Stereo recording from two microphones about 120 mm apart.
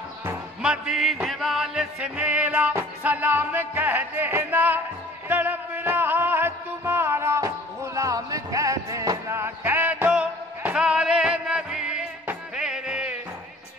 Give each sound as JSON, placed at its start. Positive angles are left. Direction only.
{"t": 0.6, "sound": "music", "side_deg": -5}